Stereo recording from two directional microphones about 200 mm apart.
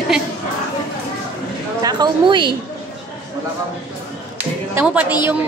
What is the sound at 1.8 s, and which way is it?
Speech, 20° right (ahead or behind).